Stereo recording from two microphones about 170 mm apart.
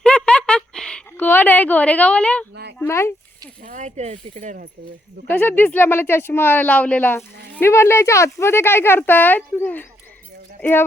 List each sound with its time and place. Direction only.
0.0 s a sound: 5° left (ahead or behind)
2.8 s speech: 15° left (ahead or behind)
3.6 s speech: 50° right (ahead or behind)
5.3 s speech: 10° left (ahead or behind)